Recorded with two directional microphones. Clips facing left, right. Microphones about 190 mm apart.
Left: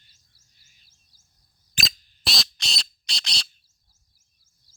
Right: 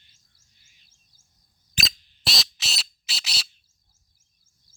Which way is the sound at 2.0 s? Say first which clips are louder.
Right 1 dB; 45° left (ahead or behind).